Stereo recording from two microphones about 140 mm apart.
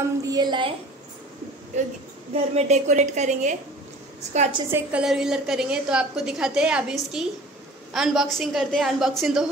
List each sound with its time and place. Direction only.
0.3 s a woman's voice: 30° right (ahead or behind)
1.7 s a woman's voice: 55° right (ahead or behind)
4.6 s a woman's voice: 15° right (ahead or behind)
5.0 s a woman's voice: 5° right (ahead or behind)